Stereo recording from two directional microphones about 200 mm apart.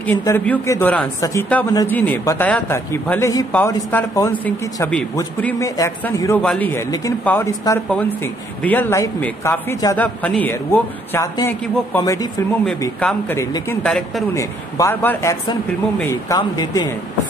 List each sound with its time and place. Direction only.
0.0 s a man's voice: 10° left (ahead or behind)
13.8 s a man's voice: centre (ahead or behind)
14.3 s a man's voice: 15° left (ahead or behind)